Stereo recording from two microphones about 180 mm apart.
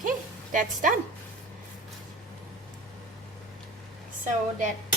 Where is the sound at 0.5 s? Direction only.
45° right (ahead or behind).